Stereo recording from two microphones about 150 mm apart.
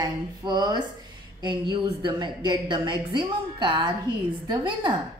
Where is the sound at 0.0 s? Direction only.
25° right (ahead or behind).